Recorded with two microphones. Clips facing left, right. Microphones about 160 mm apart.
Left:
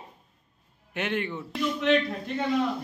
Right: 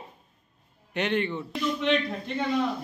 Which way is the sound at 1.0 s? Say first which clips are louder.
Right 3 dB; 5° left (ahead or behind).